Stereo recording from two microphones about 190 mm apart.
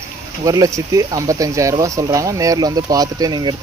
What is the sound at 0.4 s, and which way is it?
Speech, 20° right (ahead or behind).